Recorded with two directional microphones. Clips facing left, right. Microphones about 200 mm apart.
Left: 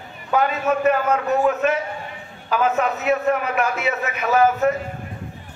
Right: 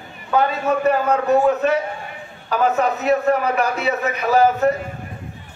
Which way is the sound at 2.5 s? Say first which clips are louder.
Right 2 dB; 35° right (ahead or behind).